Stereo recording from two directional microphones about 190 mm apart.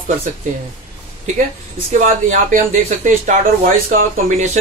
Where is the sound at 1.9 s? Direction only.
40° right (ahead or behind).